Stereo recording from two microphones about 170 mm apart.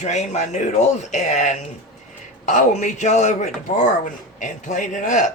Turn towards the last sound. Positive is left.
turn(degrees=45)  # may be behind; listen again after turning